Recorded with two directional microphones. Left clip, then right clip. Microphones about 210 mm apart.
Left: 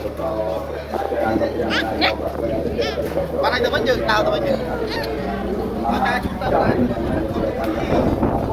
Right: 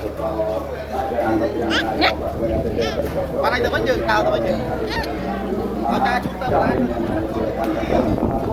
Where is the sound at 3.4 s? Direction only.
15° left (ahead or behind); by 4.4 s 30° left (ahead or behind).